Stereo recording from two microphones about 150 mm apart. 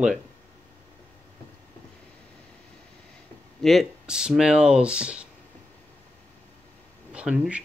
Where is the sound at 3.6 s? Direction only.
Centre (ahead or behind).